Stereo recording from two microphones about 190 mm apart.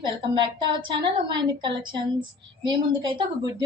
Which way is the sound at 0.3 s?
25° right (ahead or behind).